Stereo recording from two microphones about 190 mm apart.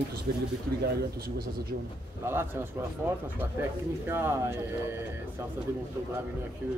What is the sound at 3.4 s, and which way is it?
Speech, 10° right (ahead or behind).